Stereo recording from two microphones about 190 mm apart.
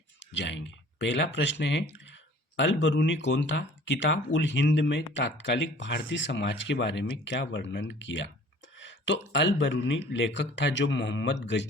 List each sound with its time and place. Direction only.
0.3 s speech: 70° left (ahead or behind)